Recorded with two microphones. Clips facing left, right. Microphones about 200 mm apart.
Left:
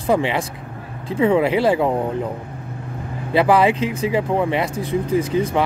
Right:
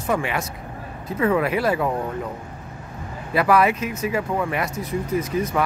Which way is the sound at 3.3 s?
30° left (ahead or behind).